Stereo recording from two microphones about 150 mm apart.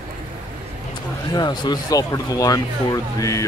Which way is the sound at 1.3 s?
30° left (ahead or behind).